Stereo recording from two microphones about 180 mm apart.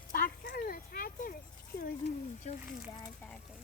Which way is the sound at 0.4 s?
60° left (ahead or behind).